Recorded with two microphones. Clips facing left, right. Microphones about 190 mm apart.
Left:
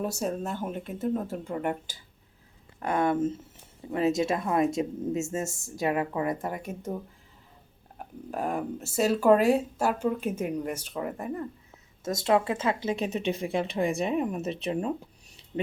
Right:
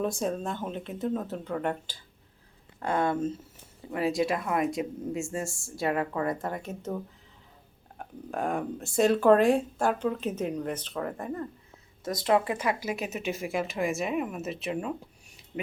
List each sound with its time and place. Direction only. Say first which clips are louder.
0.2 s speech: even; 5° left (ahead or behind)
2.8 s speech: left 2 dB; 20° left (ahead or behind)
7.9 s speech: even; 5° left (ahead or behind)
12.0 s speech: left 1 dB; 20° left (ahead or behind)